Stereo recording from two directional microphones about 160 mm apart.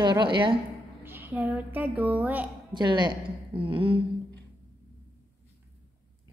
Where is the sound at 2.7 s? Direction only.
25° right (ahead or behind).